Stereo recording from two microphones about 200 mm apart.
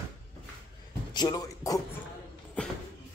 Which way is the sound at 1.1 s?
20° left (ahead or behind).